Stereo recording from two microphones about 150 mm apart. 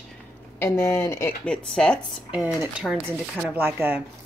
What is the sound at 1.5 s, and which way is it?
Speech, 5° left (ahead or behind).